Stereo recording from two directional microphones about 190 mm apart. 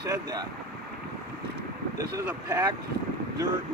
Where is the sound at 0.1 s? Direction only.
20° right (ahead or behind).